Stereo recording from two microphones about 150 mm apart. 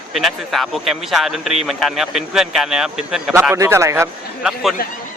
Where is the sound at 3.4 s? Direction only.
15° right (ahead or behind).